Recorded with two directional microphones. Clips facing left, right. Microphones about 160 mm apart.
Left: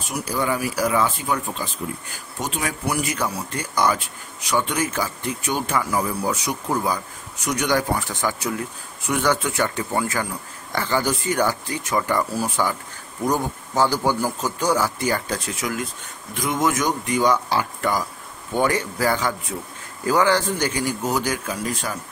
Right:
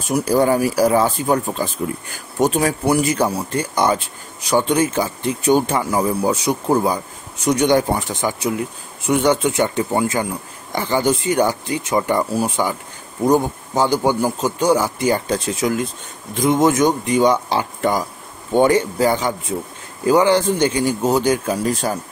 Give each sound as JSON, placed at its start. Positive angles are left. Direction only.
{"t": 0.1, "sound": "speech", "side_deg": -40}
{"t": 2.8, "sound": "speech", "side_deg": -30}